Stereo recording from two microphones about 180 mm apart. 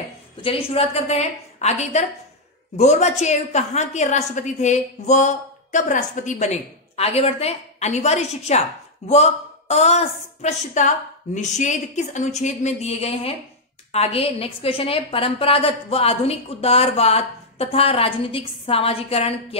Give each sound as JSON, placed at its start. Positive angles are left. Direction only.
{"t": 0.4, "sound": "a woman's voice", "side_deg": 30}